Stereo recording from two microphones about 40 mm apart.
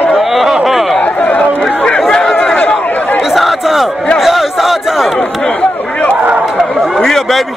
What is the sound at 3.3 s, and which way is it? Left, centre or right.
Crowd, centre.